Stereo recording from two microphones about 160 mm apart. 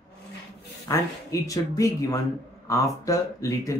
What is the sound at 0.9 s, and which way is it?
Speech, 20° left (ahead or behind).